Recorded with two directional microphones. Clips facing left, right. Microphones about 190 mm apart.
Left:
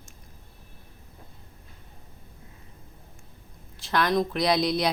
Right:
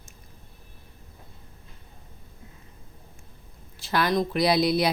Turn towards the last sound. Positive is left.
turn(degrees=-5)  # may be behind; listen again after turning